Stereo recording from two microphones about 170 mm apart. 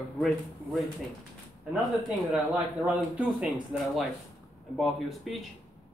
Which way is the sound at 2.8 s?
5° right (ahead or behind).